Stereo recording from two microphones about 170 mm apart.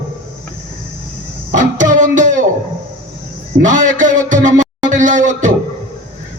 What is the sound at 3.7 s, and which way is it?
Music, 50° right (ahead or behind).